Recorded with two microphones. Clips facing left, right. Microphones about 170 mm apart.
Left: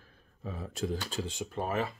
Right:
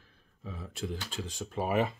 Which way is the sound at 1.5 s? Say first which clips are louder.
Right 5 dB; 5° right (ahead or behind).